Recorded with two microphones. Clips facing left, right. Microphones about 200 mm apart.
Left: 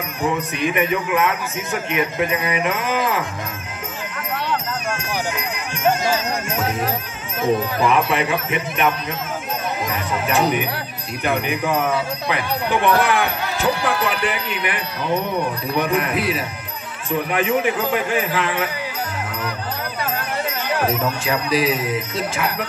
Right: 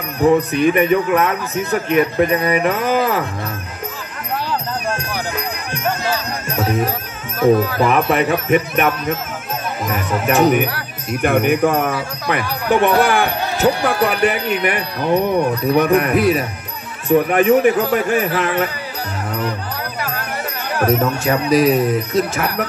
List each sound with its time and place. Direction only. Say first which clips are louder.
0.2 s a man's voice: right 9 dB; 40° right (ahead or behind)
4.5 s music: right 2 dB; 35° right (ahead or behind)
7.8 s speech: right 3 dB; 40° right (ahead or behind)
10.2 s speech: right 6 dB; 45° right (ahead or behind)
20.8 s speech: right 7 dB; 45° right (ahead or behind)